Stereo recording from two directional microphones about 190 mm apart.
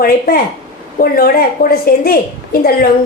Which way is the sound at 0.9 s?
50° left (ahead or behind).